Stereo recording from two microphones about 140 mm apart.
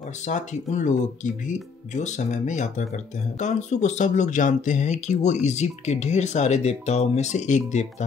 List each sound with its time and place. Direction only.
0.2 s speech: 60° left (ahead or behind)